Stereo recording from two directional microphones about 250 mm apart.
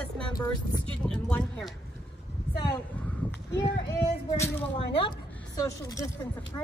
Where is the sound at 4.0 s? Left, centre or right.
Left.